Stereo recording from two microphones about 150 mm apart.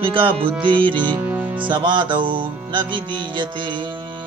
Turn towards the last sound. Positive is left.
turn(degrees=-35)  # may be behind; listen again after turning